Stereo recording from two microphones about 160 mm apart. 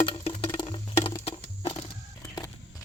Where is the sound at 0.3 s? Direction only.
35° left (ahead or behind).